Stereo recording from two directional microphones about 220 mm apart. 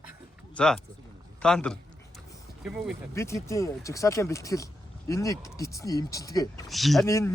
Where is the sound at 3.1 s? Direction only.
15° left (ahead or behind).